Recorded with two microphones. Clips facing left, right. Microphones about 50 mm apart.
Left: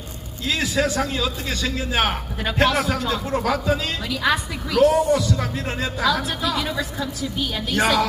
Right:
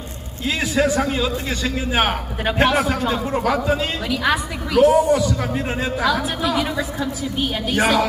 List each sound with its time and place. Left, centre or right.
0.4 s a man's voice: centre
7.7 s a man's voice: centre